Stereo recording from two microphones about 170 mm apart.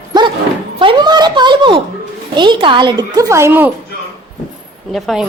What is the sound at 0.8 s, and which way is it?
A child's voice, 30° right (ahead or behind).